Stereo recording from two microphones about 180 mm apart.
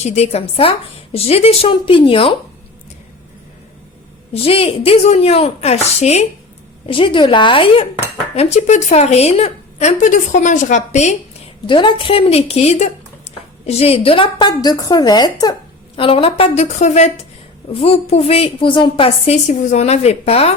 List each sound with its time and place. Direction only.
0.0 s a woman's voice: 35° left (ahead or behind)
4.4 s a woman's voice: 30° left (ahead or behind)
11.6 s a woman's voice: 25° left (ahead or behind)